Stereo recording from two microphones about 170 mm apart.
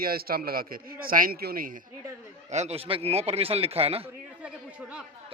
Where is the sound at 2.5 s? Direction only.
40° right (ahead or behind).